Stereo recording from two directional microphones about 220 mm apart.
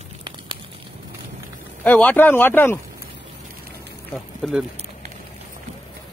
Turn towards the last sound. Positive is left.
turn(degrees=0)  # may be behind; listen again after turning